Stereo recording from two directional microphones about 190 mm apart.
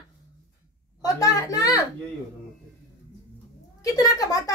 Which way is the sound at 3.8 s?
20° left (ahead or behind).